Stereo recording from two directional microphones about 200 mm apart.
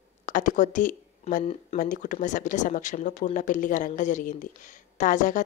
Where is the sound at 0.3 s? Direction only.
40° left (ahead or behind).